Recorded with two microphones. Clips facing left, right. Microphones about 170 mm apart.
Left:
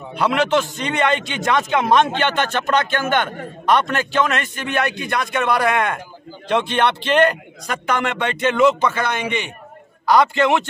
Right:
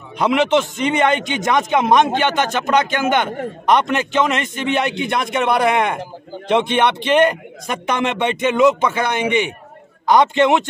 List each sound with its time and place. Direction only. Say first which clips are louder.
0.2 s a man's voice: right 2 dB; 20° right (ahead or behind)